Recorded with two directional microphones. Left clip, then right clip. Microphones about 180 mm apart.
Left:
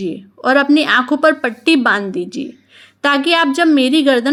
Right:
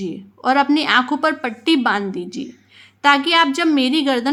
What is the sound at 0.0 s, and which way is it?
Speech, 15° left (ahead or behind).